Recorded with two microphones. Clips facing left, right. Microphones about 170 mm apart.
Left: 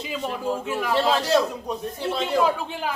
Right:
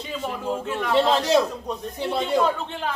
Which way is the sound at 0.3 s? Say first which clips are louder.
Even; 5° left (ahead or behind).